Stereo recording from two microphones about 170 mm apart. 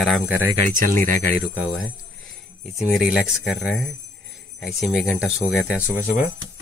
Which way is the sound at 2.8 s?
5° right (ahead or behind).